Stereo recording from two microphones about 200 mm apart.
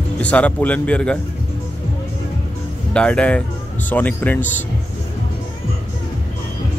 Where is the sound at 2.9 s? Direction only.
5° left (ahead or behind).